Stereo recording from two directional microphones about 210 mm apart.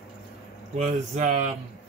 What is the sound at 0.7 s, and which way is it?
Speech, 35° right (ahead or behind).